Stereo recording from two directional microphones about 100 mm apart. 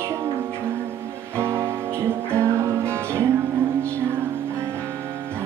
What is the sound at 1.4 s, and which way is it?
Music, 30° right (ahead or behind).